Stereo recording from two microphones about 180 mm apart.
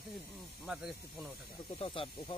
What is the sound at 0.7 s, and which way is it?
Speech, 5° right (ahead or behind).